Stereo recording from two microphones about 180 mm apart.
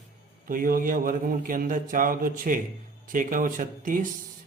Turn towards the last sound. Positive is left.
turn(degrees=-50)  # may be behind; listen again after turning